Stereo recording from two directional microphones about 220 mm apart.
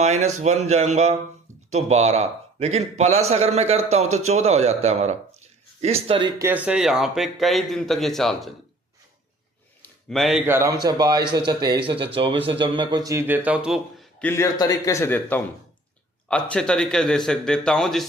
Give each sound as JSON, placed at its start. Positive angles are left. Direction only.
{"t": 0.0, "sound": "a man's voice", "side_deg": -30}
{"t": 6.4, "sound": "a man's voice", "side_deg": -5}
{"t": 9.8, "sound": "a sound", "side_deg": 0}
{"t": 10.4, "sound": "a man's voice", "side_deg": -10}